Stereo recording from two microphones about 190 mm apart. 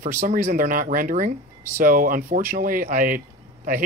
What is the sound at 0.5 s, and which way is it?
Speech, 45° right (ahead or behind).